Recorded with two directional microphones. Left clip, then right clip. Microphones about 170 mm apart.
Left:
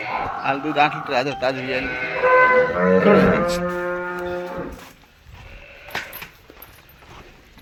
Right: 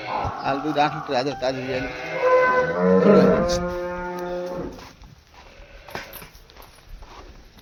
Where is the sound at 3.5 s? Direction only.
30° left (ahead or behind).